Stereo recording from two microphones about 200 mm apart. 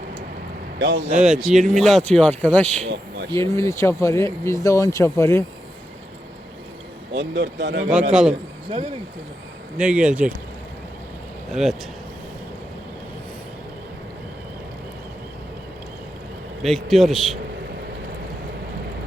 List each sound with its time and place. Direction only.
0.8 s speech: 65° right (ahead or behind)
1.1 s speech: 5° right (ahead or behind); by 5.5 s 15° left (ahead or behind)
7.1 s speech: 65° right (ahead or behind)
8.1 s speech: 5° right (ahead or behind)
9.7 s speech: 5° right (ahead or behind)
11.5 s speech: centre (ahead or behind)
16.6 s speech: centre (ahead or behind)